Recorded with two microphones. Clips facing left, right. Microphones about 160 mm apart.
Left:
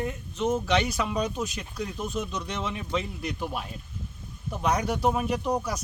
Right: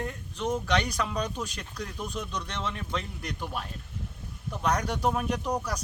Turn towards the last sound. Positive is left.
turn(degrees=10)  # may be behind; listen again after turning